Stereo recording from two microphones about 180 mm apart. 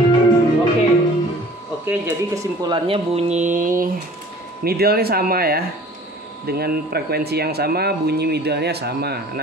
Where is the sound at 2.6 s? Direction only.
30° right (ahead or behind); by 3.8 s 45° right (ahead or behind).